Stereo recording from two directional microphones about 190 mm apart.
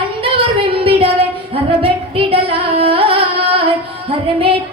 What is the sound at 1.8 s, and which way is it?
Singing, 30° right (ahead or behind).